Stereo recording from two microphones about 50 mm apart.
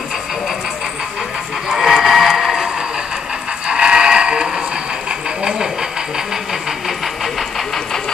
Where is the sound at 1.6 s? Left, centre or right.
Centre.